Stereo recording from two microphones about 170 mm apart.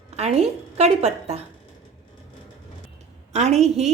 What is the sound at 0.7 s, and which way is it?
Speech, 40° right (ahead or behind).